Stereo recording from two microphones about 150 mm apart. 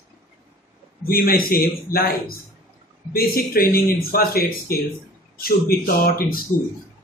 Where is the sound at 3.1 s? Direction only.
80° left.